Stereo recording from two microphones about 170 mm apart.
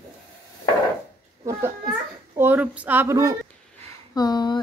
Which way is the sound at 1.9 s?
10° right (ahead or behind).